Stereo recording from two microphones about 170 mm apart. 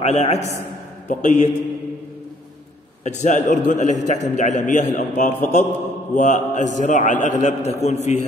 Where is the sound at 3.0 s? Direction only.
45° left (ahead or behind).